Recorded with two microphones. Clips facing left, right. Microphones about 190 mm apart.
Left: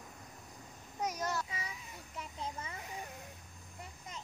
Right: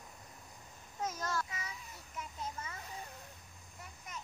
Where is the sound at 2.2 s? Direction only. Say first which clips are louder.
Left 1 dB; 25° left (ahead or behind).